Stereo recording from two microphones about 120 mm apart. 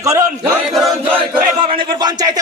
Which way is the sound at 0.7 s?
Centre (ahead or behind).